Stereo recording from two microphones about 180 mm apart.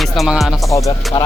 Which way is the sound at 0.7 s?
20° left (ahead or behind).